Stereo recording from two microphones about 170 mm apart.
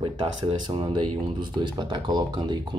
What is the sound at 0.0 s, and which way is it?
Speech, 30° right (ahead or behind).